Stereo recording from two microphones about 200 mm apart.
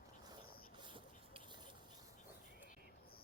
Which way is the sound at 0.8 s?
25° right (ahead or behind).